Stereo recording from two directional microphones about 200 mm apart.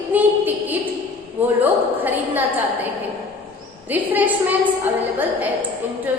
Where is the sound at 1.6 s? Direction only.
10° right (ahead or behind).